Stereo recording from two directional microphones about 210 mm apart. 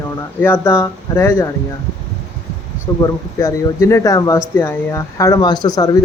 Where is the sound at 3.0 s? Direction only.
15° left (ahead or behind).